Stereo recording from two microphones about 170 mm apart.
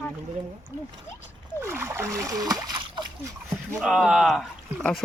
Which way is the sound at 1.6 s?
15° right (ahead or behind).